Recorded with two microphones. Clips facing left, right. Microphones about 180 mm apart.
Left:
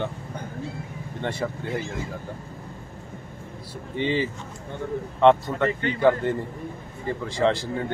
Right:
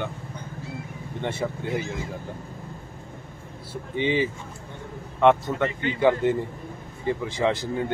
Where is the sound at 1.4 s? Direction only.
5° right (ahead or behind).